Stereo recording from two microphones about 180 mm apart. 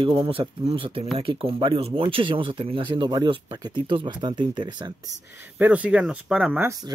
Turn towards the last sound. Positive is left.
turn(degrees=-20)  # may be behind; listen again after turning